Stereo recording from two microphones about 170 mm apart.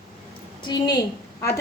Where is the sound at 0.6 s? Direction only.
25° left (ahead or behind).